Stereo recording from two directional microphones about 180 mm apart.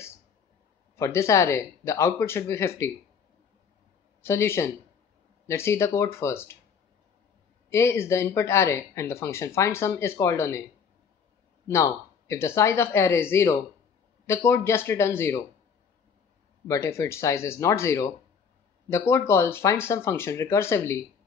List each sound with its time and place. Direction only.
0.9 s speech: 15° left (ahead or behind)
4.2 s speech: 15° left (ahead or behind)
7.7 s speech: 15° left (ahead or behind)
11.6 s speech: 15° left (ahead or behind)
16.6 s speech: 15° left (ahead or behind)